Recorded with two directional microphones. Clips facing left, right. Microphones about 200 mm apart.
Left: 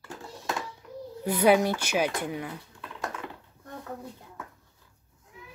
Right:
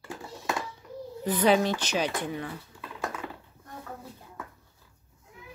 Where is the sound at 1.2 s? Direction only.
10° left (ahead or behind).